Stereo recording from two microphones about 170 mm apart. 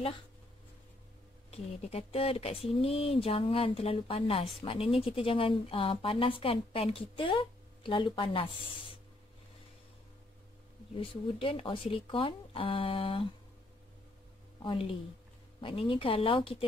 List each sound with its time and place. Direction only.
1.5 s speech: 35° left (ahead or behind)
11.0 s speech: 30° left (ahead or behind)
14.6 s speech: 30° left (ahead or behind)